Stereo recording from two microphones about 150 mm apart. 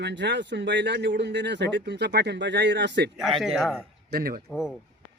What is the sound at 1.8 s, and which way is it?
Speech, 90° right.